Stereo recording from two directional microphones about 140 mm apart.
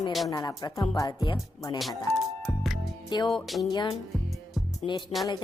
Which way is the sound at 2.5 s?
Centre (ahead or behind).